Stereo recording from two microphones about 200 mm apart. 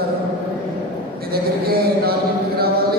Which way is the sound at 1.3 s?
50° right (ahead or behind).